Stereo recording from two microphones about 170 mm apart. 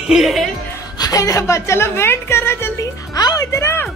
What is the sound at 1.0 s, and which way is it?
A woman's voice, 20° left (ahead or behind).